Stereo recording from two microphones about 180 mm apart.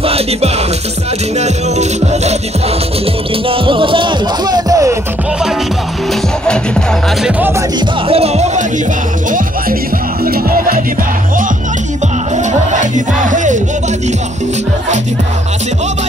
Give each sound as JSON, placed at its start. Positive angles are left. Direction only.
{"t": 0.0, "sound": "music", "side_deg": -35}
{"t": 3.4, "sound": "music", "side_deg": -30}
{"t": 7.2, "sound": "music", "side_deg": -10}
{"t": 8.1, "sound": "music", "side_deg": -35}
{"t": 10.2, "sound": "music", "side_deg": -55}
{"t": 12.7, "sound": "music", "side_deg": -45}